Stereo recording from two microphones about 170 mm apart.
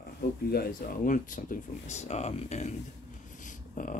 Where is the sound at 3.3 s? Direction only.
50° left (ahead or behind).